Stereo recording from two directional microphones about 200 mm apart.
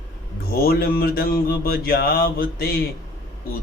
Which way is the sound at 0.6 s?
50° left (ahead or behind).